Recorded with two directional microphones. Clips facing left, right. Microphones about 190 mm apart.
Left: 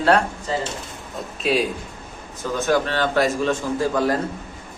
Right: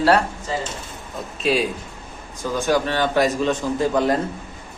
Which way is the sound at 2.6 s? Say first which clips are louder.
Even; 15° right (ahead or behind).